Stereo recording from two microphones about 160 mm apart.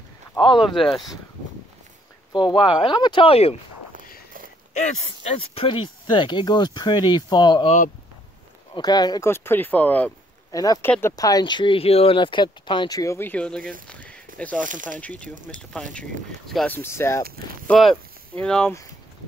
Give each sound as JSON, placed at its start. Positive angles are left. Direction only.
{"t": 0.8, "sound": "speech", "side_deg": 0}
{"t": 2.3, "sound": "speech", "side_deg": 30}
{"t": 4.7, "sound": "speech", "side_deg": 45}
{"t": 7.6, "sound": "speech", "side_deg": 50}
{"t": 8.7, "sound": "speech", "side_deg": 25}
{"t": 10.5, "sound": "speech", "side_deg": 20}
{"t": 13.8, "sound": "a sound", "side_deg": 10}
{"t": 14.6, "sound": "speech", "side_deg": -55}
{"t": 15.0, "sound": "speech", "side_deg": 10}
{"t": 16.7, "sound": "speech", "side_deg": 15}
{"t": 17.6, "sound": "speech", "side_deg": 0}